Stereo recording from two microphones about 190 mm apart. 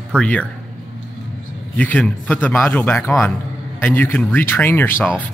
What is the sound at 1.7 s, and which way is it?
A man's voice, 10° left (ahead or behind).